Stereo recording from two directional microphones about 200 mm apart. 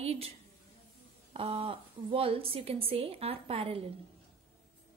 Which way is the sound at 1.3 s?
30° right (ahead or behind).